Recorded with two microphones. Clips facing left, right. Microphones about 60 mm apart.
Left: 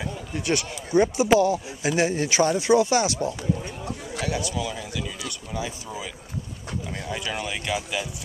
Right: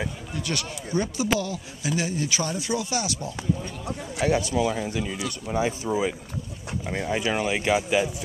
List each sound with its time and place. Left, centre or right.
0.3 s speech: left
3.8 s speech: right